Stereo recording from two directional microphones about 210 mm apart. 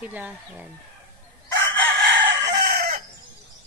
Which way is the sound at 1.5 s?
65° right (ahead or behind).